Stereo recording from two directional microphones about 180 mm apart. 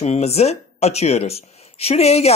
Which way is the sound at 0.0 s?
35° left (ahead or behind).